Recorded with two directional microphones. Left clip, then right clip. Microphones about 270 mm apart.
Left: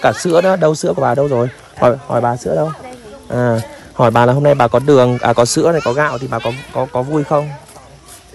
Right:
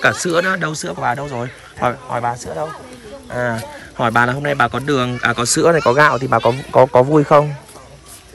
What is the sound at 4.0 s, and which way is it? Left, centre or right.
Speech, right.